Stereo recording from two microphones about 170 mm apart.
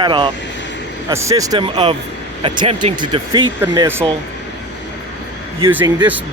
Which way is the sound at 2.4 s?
35° right (ahead or behind).